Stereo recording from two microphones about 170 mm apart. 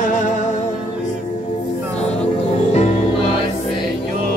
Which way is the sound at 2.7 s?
35° left (ahead or behind).